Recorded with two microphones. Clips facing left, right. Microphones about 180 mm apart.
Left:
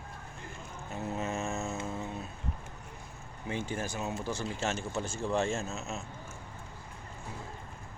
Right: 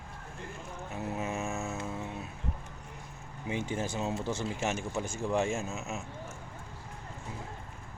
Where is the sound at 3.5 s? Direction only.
20° right (ahead or behind).